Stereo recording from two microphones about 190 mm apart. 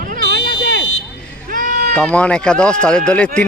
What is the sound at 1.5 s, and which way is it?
Sheep, 45° right (ahead or behind).